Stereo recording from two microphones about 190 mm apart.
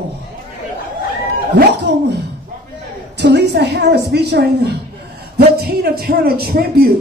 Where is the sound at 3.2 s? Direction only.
60° right (ahead or behind).